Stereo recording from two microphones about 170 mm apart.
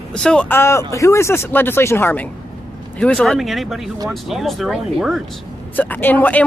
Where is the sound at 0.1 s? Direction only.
5° left (ahead or behind).